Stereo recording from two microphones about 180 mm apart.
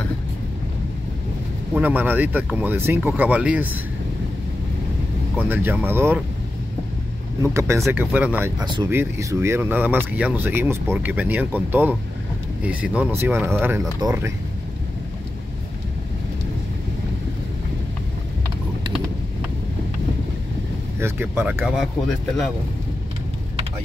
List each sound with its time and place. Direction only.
1.7 s speech: 10° right (ahead or behind)
5.5 s speech: 10° right (ahead or behind)
7.4 s speech: 15° right (ahead or behind)
8.5 s speech: 25° right (ahead or behind)
8.9 s speech: 15° right (ahead or behind)
21.0 s speech: 15° right (ahead or behind)